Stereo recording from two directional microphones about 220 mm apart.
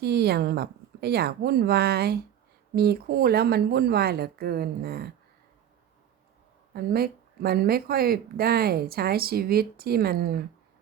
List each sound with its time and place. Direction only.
0.0 s speech: 45° right (ahead or behind)
6.7 s speech: 45° right (ahead or behind)